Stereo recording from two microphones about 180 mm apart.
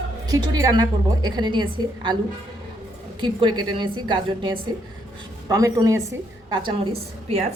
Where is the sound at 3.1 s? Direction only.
25° right (ahead or behind).